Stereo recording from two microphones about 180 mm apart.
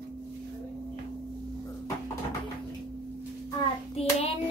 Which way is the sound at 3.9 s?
35° left (ahead or behind).